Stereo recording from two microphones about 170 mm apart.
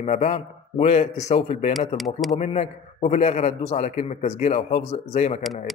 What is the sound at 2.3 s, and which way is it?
A man's voice, 40° left (ahead or behind).